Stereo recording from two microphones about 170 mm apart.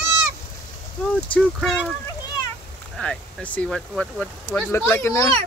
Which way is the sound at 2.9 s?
5° left (ahead or behind).